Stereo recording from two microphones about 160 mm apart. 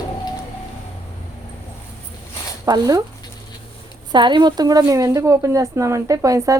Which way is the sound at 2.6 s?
25° right (ahead or behind).